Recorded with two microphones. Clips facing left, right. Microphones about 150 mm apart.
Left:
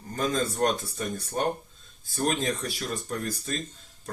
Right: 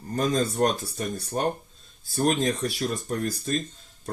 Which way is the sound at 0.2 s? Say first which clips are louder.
Right 3 dB; 40° right (ahead or behind).